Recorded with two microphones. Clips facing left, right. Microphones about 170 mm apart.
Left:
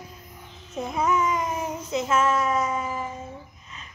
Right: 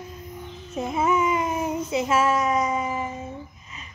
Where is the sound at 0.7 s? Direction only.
Centre (ahead or behind).